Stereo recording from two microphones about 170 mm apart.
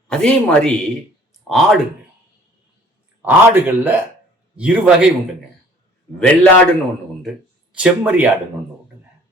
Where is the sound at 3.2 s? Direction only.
10° right (ahead or behind).